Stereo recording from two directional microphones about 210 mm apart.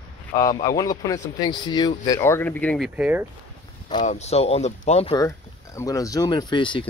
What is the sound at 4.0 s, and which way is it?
Speech, 35° left (ahead or behind).